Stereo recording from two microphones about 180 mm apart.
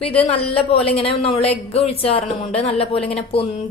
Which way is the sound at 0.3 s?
30° left (ahead or behind).